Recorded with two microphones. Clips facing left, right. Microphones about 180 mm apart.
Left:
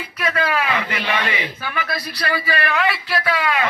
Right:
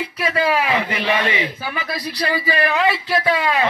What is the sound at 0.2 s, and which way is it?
Speech, 25° right (ahead or behind).